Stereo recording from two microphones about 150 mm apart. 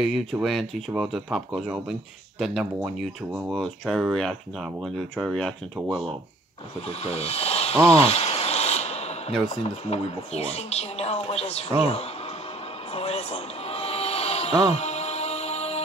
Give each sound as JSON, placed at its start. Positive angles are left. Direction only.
{"t": 0.0, "sound": "speech", "side_deg": 0}
{"t": 7.0, "sound": "speech", "side_deg": 45}
{"t": 7.9, "sound": "a sound", "side_deg": 45}
{"t": 9.6, "sound": "speech", "side_deg": 45}
{"t": 12.9, "sound": "music", "side_deg": 45}